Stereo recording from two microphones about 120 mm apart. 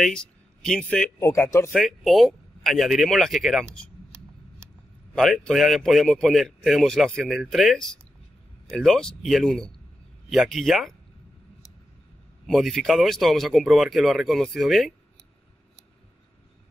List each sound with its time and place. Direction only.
0.0 s speech: 5° left (ahead or behind)
1.2 s speech: 25° left (ahead or behind)
1.7 s speech: centre (ahead or behind)
4.1 s a sound: 25° right (ahead or behind)
5.1 s speech: 5° left (ahead or behind)
12.4 s speech: centre (ahead or behind)